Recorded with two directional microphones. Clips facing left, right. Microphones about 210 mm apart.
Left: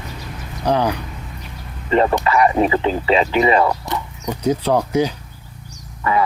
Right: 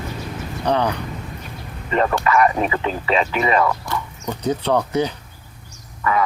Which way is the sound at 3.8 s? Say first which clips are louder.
Left 1 dB; 15° left (ahead or behind).